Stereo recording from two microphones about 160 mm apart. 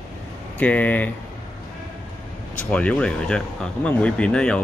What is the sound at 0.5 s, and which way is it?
Speech, 10° left (ahead or behind).